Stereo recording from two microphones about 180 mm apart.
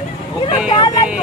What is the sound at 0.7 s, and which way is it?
Speech, 25° left (ahead or behind).